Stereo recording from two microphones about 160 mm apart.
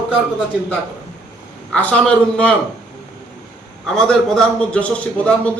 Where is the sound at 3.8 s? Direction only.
5° left (ahead or behind).